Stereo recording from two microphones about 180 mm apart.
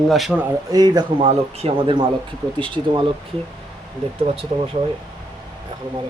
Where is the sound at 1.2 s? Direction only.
35° right (ahead or behind).